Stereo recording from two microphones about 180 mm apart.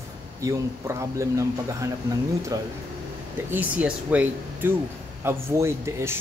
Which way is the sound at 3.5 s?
10° right (ahead or behind).